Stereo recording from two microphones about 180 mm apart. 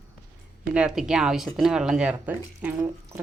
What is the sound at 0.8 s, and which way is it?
Speech, 5° right (ahead or behind).